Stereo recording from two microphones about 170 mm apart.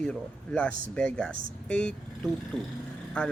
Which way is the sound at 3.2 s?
5° left (ahead or behind).